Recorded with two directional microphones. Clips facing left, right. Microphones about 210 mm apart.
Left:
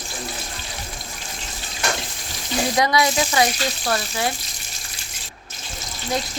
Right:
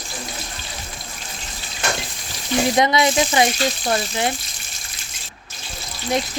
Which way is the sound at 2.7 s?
25° right (ahead or behind).